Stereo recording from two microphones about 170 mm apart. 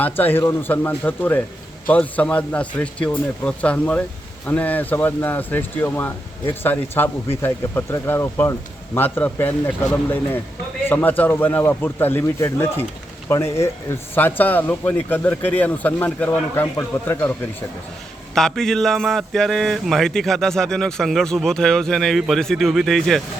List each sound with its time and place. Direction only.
0.0 s a man's voice: 10° left (ahead or behind)
18.3 s speech: centre (ahead or behind)